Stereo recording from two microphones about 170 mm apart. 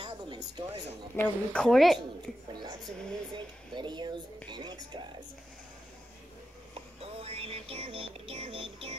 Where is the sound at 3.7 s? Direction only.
25° right (ahead or behind).